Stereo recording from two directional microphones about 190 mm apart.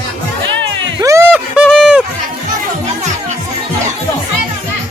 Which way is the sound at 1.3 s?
Centre (ahead or behind).